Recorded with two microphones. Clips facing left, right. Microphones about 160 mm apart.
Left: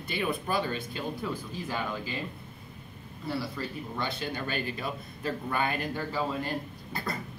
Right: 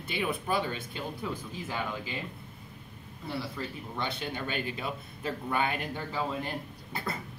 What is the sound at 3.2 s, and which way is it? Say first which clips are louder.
Speech: left 2 dB; 20° right (ahead or behind).